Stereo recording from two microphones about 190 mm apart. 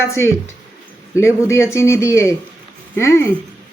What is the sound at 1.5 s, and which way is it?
Speech, 15° left (ahead or behind).